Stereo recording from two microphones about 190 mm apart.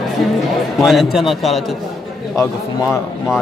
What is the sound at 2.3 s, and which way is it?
Speech, 15° left (ahead or behind).